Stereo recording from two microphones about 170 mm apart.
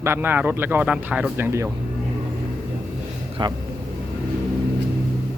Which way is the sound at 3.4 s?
25° right (ahead or behind).